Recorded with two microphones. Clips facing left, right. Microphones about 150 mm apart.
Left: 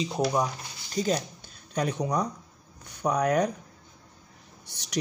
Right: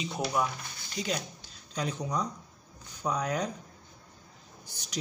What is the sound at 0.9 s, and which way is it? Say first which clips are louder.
Speech: left 7 dB; 45° left (ahead or behind).